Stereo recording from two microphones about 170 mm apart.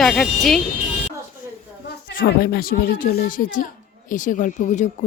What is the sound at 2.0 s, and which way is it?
A woman's voice, 65° left (ahead or behind).